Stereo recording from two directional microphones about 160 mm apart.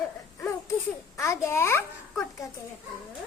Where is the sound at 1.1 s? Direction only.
20° left (ahead or behind).